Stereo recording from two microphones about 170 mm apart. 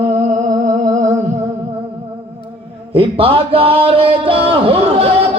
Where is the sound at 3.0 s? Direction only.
30° right (ahead or behind).